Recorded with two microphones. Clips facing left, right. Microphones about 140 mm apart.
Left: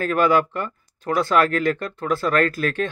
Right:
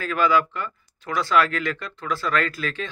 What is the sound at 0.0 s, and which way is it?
Speech, 50° left (ahead or behind).